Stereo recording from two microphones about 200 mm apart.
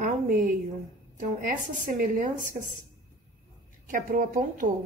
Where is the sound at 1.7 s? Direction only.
40° right (ahead or behind).